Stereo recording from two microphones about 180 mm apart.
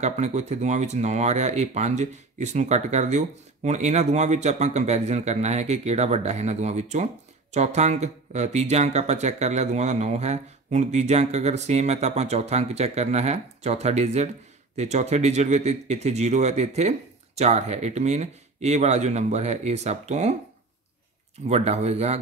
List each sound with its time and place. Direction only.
0.0 s speech: 40° right (ahead or behind)
21.5 s speech: 35° right (ahead or behind)